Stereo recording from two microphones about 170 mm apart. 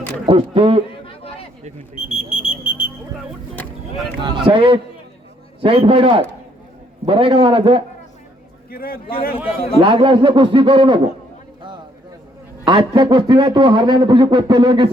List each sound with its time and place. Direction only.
0.3 s a man's voice: 30° right (ahead or behind)
2.0 s a sound: 35° left (ahead or behind)
4.2 s a man's voice: 30° right (ahead or behind)
8.7 s a man's voice: 60° left (ahead or behind)
9.8 s speech: 30° right (ahead or behind)
12.6 s speech: 25° right (ahead or behind)